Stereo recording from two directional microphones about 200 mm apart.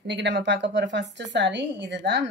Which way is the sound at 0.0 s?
60° right (ahead or behind).